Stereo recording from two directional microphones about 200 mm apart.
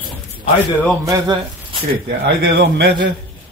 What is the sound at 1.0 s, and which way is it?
Speech, 15° right (ahead or behind).